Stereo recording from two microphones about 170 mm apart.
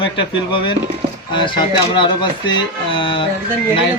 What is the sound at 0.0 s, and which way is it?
Speech, 30° left (ahead or behind).